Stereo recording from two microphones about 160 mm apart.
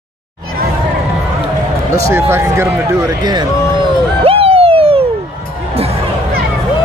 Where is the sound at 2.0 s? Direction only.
15° right (ahead or behind).